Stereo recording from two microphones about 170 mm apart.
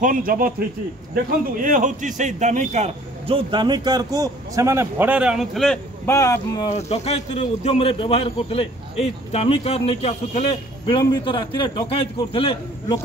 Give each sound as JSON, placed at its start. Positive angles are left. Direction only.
{"t": 0.0, "sound": "a man's voice", "side_deg": -55}
{"t": 6.0, "sound": "speech", "side_deg": 15}
{"t": 6.7, "sound": "a man's voice", "side_deg": 40}